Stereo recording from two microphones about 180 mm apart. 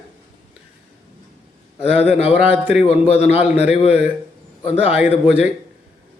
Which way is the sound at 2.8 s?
35° left (ahead or behind).